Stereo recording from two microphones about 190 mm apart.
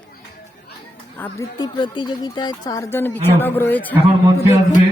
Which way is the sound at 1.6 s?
25° left (ahead or behind).